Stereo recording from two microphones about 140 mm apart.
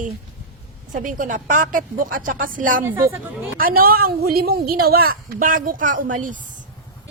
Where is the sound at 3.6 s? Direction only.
90° right; by 6.4 s 70° right (ahead or behind).